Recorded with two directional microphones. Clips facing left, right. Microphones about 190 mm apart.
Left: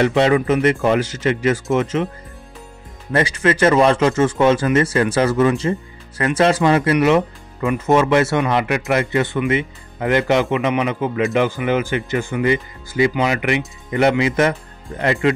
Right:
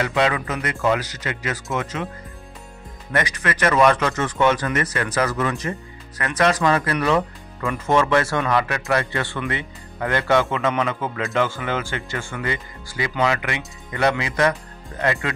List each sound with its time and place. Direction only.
0.0 s speech: 30° left (ahead or behind)
3.1 s speech: 30° left (ahead or behind)